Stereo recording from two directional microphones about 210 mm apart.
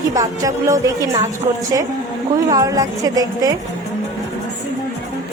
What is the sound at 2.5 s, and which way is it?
A woman's voice, 15° right (ahead or behind).